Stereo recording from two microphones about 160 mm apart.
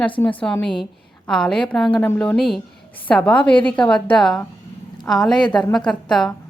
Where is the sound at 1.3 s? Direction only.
5° left (ahead or behind).